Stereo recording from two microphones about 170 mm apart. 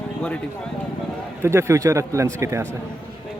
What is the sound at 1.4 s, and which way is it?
A man's voice, 15° right (ahead or behind).